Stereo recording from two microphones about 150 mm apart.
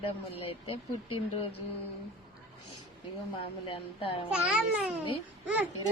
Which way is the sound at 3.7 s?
35° left (ahead or behind).